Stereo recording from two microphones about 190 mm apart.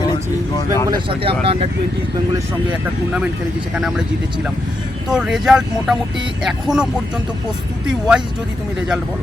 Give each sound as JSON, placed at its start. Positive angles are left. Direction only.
{"t": 0.1, "sound": "vehicle", "side_deg": 20}
{"t": 0.9, "sound": "speech", "side_deg": -25}
{"t": 3.8, "sound": "speech", "side_deg": -5}
{"t": 5.1, "sound": "speech", "side_deg": -5}
{"t": 7.9, "sound": "speech", "side_deg": -5}